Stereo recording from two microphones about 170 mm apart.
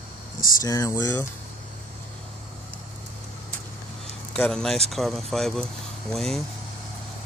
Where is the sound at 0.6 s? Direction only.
20° left (ahead or behind).